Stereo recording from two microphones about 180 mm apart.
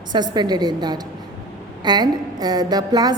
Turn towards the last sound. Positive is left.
turn(degrees=-20)  # may be behind; listen again after turning